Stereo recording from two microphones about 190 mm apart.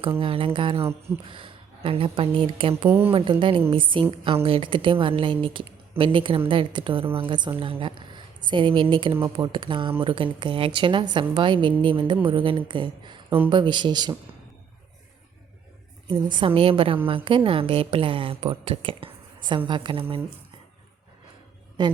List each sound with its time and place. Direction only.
0.2 s a woman's voice: 30° right (ahead or behind)
16.0 s a woman's voice: 25° right (ahead or behind)
21.8 s a woman's voice: 25° right (ahead or behind)